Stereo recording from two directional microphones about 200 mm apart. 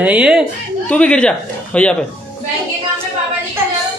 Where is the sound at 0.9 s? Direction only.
5° left (ahead or behind).